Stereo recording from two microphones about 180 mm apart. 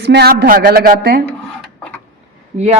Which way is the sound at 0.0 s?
65° right (ahead or behind).